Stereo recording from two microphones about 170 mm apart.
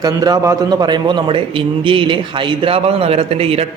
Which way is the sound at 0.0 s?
20° right (ahead or behind).